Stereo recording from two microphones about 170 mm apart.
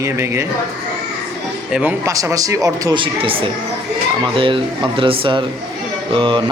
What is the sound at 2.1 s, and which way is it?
Speech, 20° right (ahead or behind).